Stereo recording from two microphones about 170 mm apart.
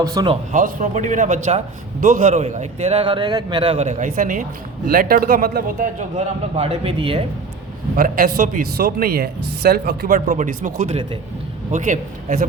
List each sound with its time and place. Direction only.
0.0 s speech: 20° right (ahead or behind)
0.5 s a man's voice: 50° right (ahead or behind)
6.1 s a man's voice: 35° right (ahead or behind)
7.9 s speech: 55° right (ahead or behind); by 11.2 s 35° right (ahead or behind)
11.7 s a man's voice: 45° right (ahead or behind)